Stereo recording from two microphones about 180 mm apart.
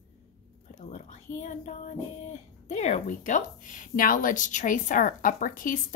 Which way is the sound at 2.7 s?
40° left (ahead or behind).